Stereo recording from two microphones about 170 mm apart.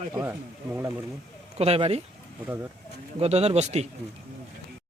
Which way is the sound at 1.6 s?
35° right (ahead or behind).